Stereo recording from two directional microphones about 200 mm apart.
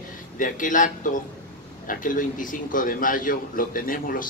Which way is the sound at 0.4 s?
40° left (ahead or behind).